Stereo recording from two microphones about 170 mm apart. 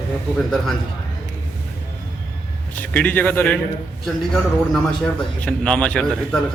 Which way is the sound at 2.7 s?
10° left (ahead or behind).